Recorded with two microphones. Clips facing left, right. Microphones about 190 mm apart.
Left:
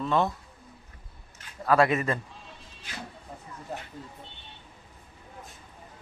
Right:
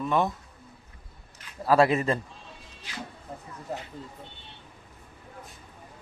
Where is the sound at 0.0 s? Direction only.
15° right (ahead or behind).